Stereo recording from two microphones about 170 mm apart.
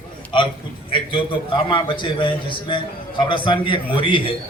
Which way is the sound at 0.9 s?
30° left (ahead or behind).